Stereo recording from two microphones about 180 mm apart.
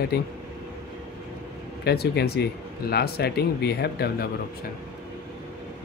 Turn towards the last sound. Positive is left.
turn(degrees=60)  # may be behind; listen again after turning